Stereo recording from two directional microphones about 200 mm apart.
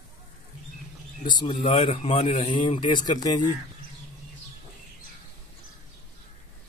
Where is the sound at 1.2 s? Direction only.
25° left (ahead or behind).